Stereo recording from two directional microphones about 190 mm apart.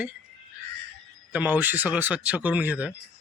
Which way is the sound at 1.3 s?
5° right (ahead or behind).